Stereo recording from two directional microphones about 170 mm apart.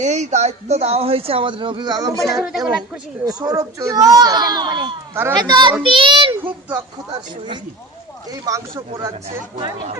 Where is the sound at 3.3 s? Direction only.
20° right (ahead or behind).